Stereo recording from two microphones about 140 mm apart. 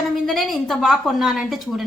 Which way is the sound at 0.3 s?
Centre (ahead or behind).